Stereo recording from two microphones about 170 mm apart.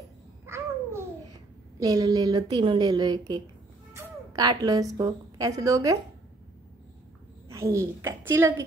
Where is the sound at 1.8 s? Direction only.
25° right (ahead or behind).